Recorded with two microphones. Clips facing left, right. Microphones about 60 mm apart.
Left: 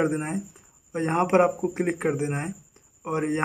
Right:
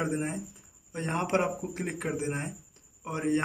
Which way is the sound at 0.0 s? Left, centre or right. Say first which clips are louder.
Left 6 dB; left.